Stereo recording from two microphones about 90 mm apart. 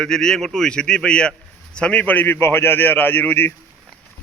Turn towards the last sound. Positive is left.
turn(degrees=20)  # may be behind; listen again after turning